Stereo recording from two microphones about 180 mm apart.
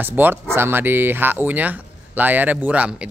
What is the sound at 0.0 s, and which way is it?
A man's voice, 10° right (ahead or behind).